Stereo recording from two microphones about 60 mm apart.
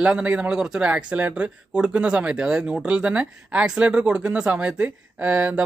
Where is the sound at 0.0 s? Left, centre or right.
Right.